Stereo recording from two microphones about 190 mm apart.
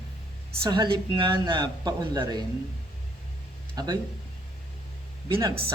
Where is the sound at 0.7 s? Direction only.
25° right (ahead or behind).